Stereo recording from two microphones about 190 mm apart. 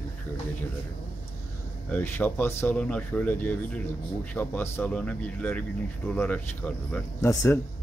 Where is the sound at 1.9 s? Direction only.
10° left (ahead or behind).